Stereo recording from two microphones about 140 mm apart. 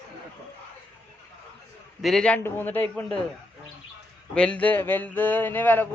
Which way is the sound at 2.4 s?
15° left (ahead or behind).